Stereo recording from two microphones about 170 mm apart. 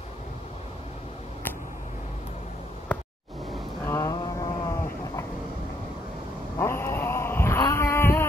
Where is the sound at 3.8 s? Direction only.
15° left (ahead or behind).